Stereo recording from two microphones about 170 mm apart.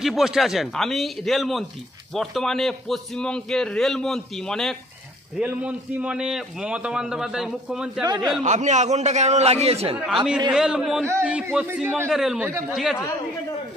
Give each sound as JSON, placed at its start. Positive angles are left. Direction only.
{"t": 0.0, "sound": "a man's voice", "side_deg": 0}
{"t": 5.4, "sound": "a man's voice", "side_deg": -5}
{"t": 8.0, "sound": "a man's voice", "side_deg": -25}
{"t": 8.5, "sound": "a man's voice", "side_deg": -45}
{"t": 9.9, "sound": "a man's voice", "side_deg": -5}